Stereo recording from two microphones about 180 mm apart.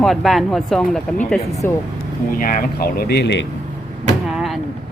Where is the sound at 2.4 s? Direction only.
55° left (ahead or behind); by 3.4 s 70° left (ahead or behind).